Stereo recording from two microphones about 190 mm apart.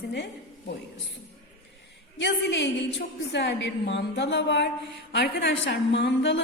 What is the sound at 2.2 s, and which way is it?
A woman's voice, 65° left (ahead or behind).